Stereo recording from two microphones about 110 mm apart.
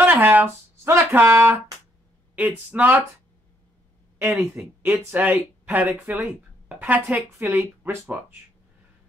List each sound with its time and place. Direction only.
0.0 s speech: 15° right (ahead or behind)
4.2 s speech: 20° right (ahead or behind)